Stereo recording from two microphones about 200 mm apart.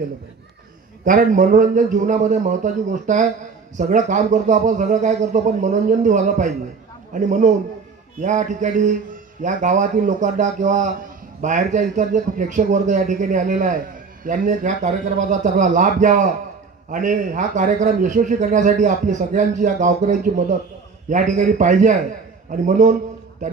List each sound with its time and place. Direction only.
1.0 s a man's voice: 40° right (ahead or behind)